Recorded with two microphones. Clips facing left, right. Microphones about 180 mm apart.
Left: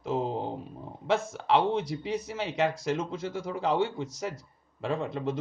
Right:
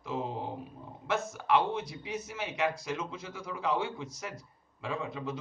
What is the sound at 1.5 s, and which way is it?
Speech, 75° left (ahead or behind).